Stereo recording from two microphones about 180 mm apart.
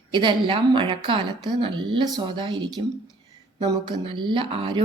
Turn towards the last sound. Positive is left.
turn(degrees=-30)  # may be behind; listen again after turning